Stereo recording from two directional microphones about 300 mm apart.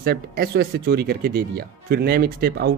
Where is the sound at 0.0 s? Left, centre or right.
Right.